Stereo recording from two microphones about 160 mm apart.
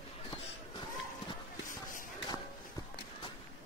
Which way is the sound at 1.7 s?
55° left (ahead or behind).